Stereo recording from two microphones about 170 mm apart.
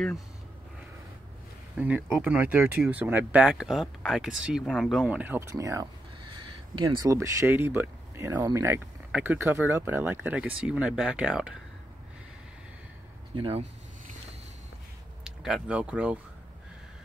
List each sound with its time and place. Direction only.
1.8 s speech: 10° right (ahead or behind)
13.3 s speech: 30° right (ahead or behind)
15.2 s speech: 5° right (ahead or behind)